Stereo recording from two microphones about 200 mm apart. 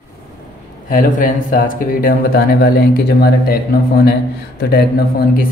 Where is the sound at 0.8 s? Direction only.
40° left (ahead or behind).